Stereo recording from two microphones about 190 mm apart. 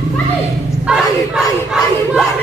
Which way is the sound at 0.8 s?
5° right (ahead or behind).